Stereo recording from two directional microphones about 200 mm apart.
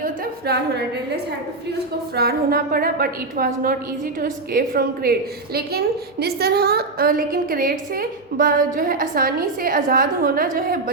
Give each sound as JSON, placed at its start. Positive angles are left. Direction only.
{"t": 0.0, "sound": "a woman's voice", "side_deg": -55}